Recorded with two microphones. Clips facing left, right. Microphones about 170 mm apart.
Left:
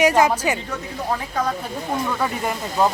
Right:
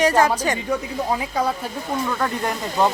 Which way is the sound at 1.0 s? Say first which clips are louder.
Even; 10° right (ahead or behind).